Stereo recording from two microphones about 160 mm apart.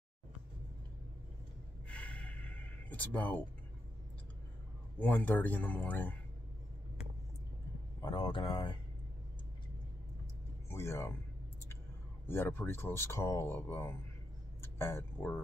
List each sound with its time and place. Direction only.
1.9 s a sound: 10° left (ahead or behind)
4.9 s speech: 10° left (ahead or behind)
8.0 s speech: 30° left (ahead or behind)
10.7 s speech: 15° left (ahead or behind)
12.3 s speech: 15° left (ahead or behind)